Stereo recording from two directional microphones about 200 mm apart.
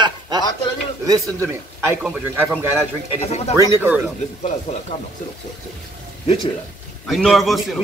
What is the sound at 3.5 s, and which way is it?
Speech, 10° right (ahead or behind).